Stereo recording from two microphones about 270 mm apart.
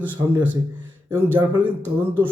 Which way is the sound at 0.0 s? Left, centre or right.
Centre.